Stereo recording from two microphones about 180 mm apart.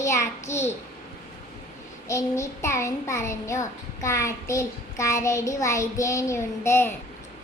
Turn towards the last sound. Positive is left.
turn(degrees=15)  # may be behind; listen again after turning